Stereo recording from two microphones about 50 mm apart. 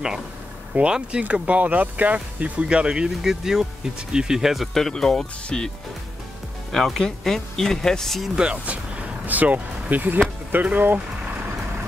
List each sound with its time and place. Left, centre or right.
0.7 s speech: right
3.2 s speech: centre
4.7 s speech: centre
6.7 s speech: centre
8.4 s speech: right